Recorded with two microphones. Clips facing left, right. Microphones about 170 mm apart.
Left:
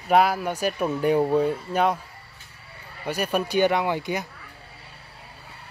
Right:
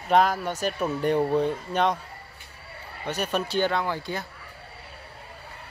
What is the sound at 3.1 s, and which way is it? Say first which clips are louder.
Speech: left 3 dB; 10° left (ahead or behind).